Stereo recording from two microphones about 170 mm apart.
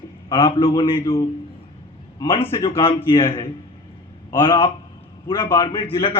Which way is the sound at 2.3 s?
30° left (ahead or behind).